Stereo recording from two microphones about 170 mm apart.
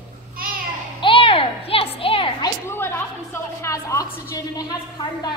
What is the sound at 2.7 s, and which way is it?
A woman's voice, 15° left (ahead or behind).